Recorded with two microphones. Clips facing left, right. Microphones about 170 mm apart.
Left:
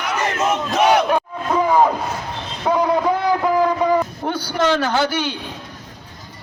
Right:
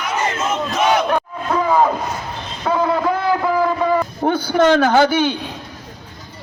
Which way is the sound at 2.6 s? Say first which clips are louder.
Left 1 dB; 15° left (ahead or behind).